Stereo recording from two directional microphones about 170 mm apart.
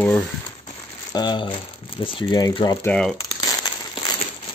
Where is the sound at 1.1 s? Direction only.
25° left (ahead or behind).